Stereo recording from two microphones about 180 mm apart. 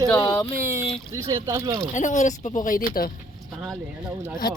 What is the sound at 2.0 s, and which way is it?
A woman's voice, 45° left (ahead or behind).